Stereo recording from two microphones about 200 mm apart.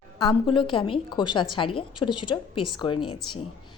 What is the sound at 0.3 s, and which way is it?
A woman's voice, 25° left (ahead or behind).